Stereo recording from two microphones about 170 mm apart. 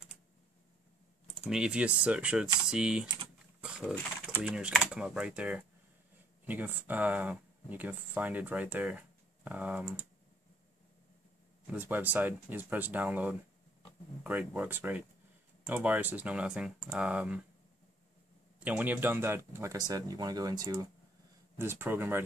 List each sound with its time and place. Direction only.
1.5 s speech: 5° right (ahead or behind)
3.8 s speech: 5° left (ahead or behind)
4.4 s speech: 5° right (ahead or behind)
11.7 s speech: 10° right (ahead or behind)
18.6 s speech: 10° right (ahead or behind); by 20.9 s 25° right (ahead or behind)
21.5 s speech: 15° right (ahead or behind)